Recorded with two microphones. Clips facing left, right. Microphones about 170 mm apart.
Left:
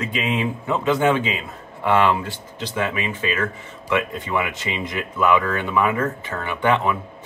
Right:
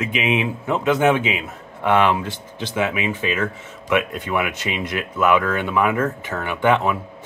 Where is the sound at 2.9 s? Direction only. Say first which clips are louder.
Right 2 dB; 10° right (ahead or behind).